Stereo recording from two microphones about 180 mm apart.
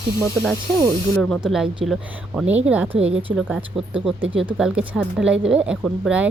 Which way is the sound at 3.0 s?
35° right (ahead or behind).